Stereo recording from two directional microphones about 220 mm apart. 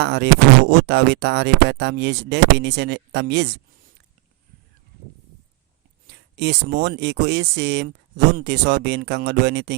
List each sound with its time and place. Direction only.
0.0 s speech: 50° right (ahead or behind)
6.1 s speech: 50° right (ahead or behind)